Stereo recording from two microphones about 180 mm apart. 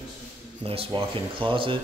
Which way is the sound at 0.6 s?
30° right (ahead or behind).